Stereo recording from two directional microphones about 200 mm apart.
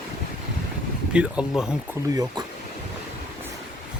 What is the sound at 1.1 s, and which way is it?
Speech, 5° right (ahead or behind).